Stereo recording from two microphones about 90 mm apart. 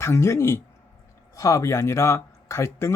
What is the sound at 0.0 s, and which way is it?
Speech, 30° left (ahead or behind).